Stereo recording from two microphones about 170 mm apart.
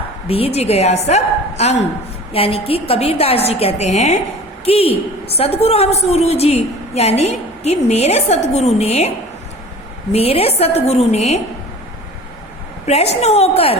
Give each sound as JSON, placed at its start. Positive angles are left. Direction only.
{"t": 0.3, "sound": "a woman's voice", "side_deg": 35}
{"t": 12.9, "sound": "a woman's voice", "side_deg": 40}